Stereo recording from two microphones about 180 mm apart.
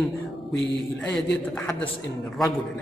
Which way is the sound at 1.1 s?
5° left (ahead or behind).